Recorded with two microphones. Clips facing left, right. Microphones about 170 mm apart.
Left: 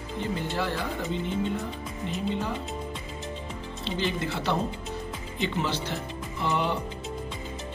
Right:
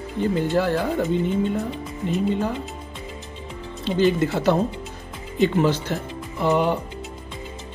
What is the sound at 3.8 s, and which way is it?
Music, 45° right (ahead or behind).